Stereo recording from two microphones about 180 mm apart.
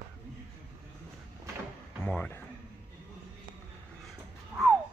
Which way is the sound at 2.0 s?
10° left (ahead or behind).